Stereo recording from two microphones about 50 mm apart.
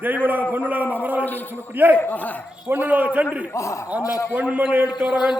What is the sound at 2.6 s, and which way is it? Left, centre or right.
Speech, right.